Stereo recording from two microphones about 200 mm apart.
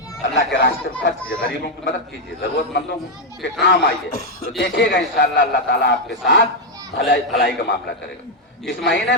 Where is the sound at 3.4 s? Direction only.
65° left (ahead or behind).